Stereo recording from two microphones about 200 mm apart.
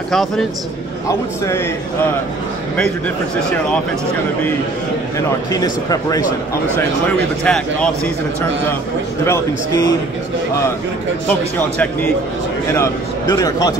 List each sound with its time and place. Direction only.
0.1 s speech: centre (ahead or behind)
1.0 s a man's voice: 15° left (ahead or behind)
5.5 s a man's voice: 20° left (ahead or behind)
7.4 s speech: 5° left (ahead or behind)
9.2 s a man's voice: 15° left (ahead or behind)
11.2 s a man's voice: 5° left (ahead or behind)